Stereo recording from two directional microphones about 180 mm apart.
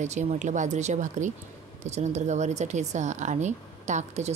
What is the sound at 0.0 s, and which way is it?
Speech, 40° right (ahead or behind).